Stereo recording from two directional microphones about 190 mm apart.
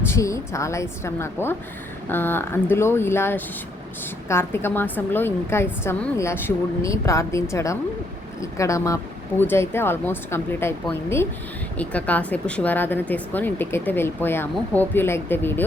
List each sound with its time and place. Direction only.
0.0 s a woman's voice: 15° left (ahead or behind)